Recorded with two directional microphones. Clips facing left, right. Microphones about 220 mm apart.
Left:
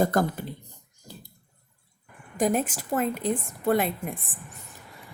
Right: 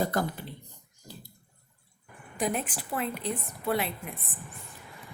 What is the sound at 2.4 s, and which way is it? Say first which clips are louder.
A woman's voice: left 6 dB; 45° left (ahead or behind).